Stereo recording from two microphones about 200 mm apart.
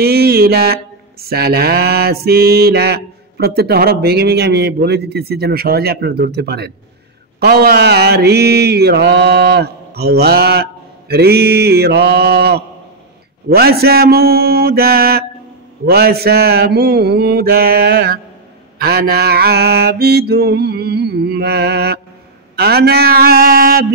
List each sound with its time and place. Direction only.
0.0 s mantra: 50° right (ahead or behind)